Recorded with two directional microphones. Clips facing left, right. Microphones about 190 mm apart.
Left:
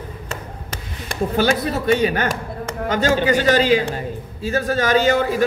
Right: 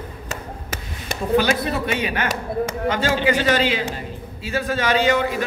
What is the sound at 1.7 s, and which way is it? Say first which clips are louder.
A man's voice: left 5 dB; 40° left (ahead or behind).